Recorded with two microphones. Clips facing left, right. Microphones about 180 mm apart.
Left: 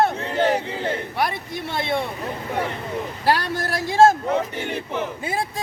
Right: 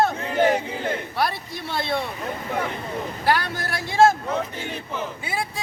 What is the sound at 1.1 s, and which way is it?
Speech, 20° left (ahead or behind).